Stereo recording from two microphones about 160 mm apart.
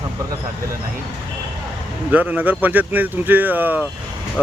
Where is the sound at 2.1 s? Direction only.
10° right (ahead or behind).